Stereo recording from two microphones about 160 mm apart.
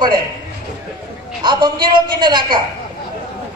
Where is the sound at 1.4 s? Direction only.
30° right (ahead or behind).